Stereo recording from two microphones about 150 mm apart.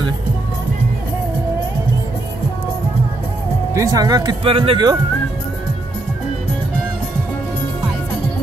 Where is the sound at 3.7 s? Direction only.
20° right (ahead or behind).